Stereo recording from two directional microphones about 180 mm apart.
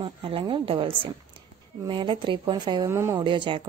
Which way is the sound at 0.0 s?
30° right (ahead or behind).